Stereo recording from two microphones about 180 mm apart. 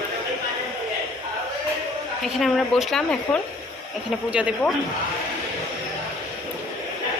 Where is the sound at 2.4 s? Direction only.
Centre (ahead or behind).